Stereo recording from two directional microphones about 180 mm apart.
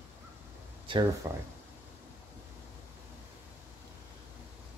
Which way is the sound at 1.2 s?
15° right (ahead or behind).